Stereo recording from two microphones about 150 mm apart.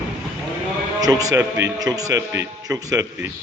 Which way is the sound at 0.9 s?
25° right (ahead or behind).